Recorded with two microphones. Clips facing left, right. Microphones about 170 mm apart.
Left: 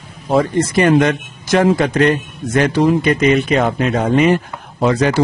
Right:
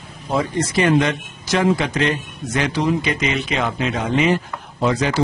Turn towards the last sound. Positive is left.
turn(degrees=55)  # may be behind; listen again after turning